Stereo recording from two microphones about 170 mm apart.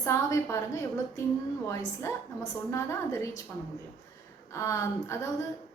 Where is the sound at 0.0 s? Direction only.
15° left (ahead or behind).